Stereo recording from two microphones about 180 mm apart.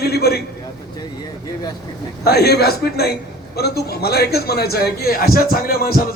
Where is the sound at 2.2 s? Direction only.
60° left (ahead or behind).